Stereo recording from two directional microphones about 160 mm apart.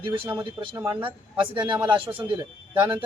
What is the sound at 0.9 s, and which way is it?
Speech, 30° right (ahead or behind).